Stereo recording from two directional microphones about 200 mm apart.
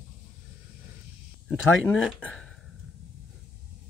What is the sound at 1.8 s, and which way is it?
Speech, 5° left (ahead or behind).